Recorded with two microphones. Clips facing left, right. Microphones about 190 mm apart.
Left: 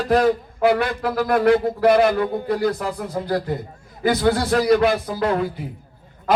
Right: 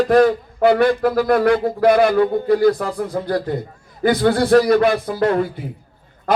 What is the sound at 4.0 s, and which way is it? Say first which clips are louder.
Speech: right 3 dB; 55° right (ahead or behind).